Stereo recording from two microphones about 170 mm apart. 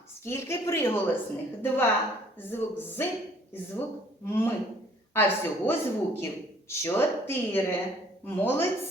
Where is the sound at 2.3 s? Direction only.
10° left (ahead or behind).